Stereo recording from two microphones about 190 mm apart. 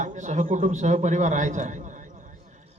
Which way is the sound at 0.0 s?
40° right (ahead or behind).